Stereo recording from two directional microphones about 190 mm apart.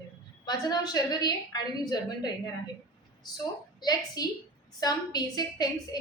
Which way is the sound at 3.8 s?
20° left (ahead or behind).